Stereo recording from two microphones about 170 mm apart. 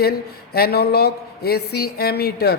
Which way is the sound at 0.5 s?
70° left (ahead or behind).